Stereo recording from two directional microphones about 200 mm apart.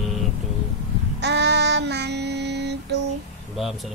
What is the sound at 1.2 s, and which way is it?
Child singing, 60° right (ahead or behind).